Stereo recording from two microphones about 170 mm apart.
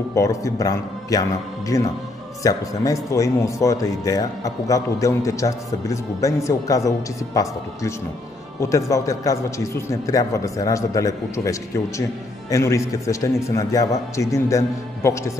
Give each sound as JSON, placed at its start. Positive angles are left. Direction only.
{"t": 0.1, "sound": "a man's voice", "side_deg": 20}